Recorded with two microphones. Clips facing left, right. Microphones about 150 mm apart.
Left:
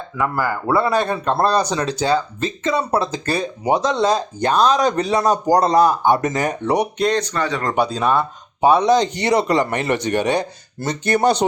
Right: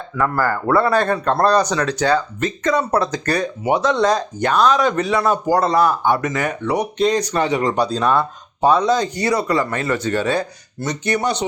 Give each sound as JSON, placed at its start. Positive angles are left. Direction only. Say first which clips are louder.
{"t": 0.2, "sound": "speech", "louder": "right 2 dB", "side_deg": 10}
{"t": 5.8, "sound": "speech", "louder": "left 2 dB", "side_deg": 15}
{"t": 6.3, "sound": "speech", "louder": "left 1 dB", "side_deg": 40}
{"t": 7.2, "sound": "speech", "louder": "right 3 dB", "side_deg": -20}
{"t": 7.7, "sound": "speech", "louder": "even", "side_deg": 0}
{"t": 10.8, "sound": "speech", "louder": "left 2 dB", "side_deg": 30}